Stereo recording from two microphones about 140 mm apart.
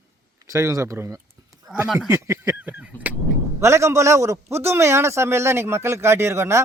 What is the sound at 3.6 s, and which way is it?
A man's voice, 20° right (ahead or behind).